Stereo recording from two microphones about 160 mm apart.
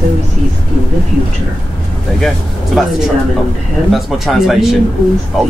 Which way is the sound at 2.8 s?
Centre (ahead or behind).